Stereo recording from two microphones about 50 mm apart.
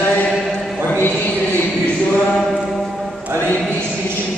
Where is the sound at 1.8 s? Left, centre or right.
Left.